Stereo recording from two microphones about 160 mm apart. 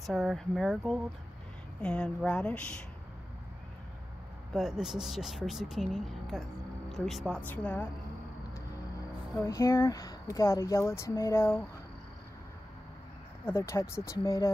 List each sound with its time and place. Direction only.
0.0 s speech: centre (ahead or behind)
4.5 s speech: centre (ahead or behind)
9.4 s speech: 20° left (ahead or behind)
13.5 s speech: 15° left (ahead or behind)